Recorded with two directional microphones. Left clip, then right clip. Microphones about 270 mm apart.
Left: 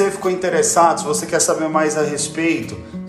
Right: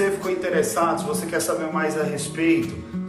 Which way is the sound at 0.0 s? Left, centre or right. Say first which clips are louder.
Left 5 dB; centre.